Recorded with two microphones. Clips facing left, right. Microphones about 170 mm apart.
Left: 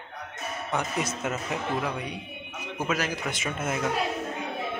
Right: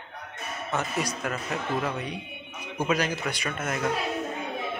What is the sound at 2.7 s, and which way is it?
A man's voice, 5° left (ahead or behind).